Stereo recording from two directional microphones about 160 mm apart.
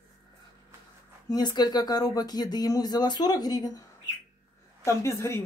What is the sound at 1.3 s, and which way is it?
Speech, 25° left (ahead or behind).